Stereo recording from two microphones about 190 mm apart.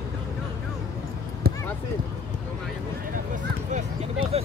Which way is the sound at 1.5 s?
55° right (ahead or behind).